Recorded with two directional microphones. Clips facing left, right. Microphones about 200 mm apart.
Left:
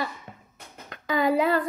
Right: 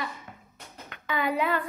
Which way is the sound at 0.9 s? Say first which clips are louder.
Left 6 dB; 35° left (ahead or behind).